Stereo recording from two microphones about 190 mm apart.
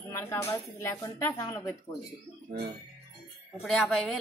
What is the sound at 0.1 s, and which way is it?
Speech, 15° left (ahead or behind).